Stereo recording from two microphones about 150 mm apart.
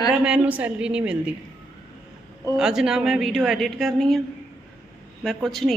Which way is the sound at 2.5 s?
5° right (ahead or behind).